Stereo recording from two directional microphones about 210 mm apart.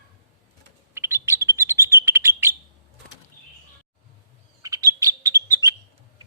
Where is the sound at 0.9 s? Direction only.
10° right (ahead or behind).